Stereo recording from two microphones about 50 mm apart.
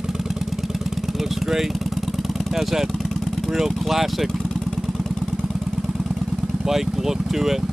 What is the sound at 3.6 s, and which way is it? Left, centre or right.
Speech, centre.